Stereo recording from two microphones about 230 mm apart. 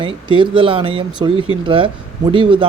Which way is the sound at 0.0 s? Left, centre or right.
Right.